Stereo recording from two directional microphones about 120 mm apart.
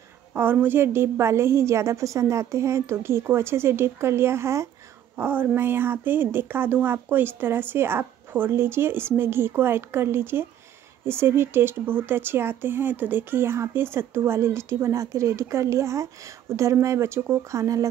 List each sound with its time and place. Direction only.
0.3 s speech: 15° right (ahead or behind)